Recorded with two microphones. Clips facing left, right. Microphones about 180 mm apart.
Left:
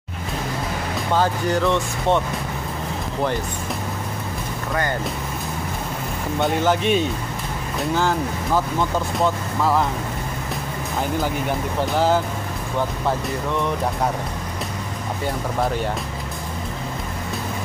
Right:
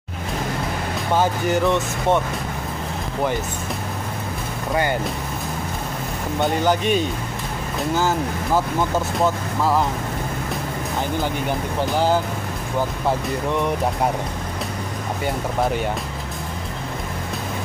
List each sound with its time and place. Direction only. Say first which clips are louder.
1.1 s speech: right 1 dB; 15° right (ahead or behind)
6.4 s speech: even; centre (ahead or behind)
9.2 s speech: even; 5° right (ahead or behind)
11.4 s speech: even; centre (ahead or behind)